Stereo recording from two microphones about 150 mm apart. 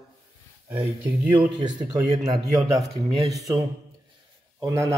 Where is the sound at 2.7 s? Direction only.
20° right (ahead or behind).